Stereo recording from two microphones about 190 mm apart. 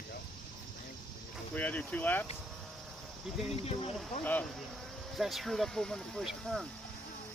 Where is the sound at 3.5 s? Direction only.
30° left (ahead or behind).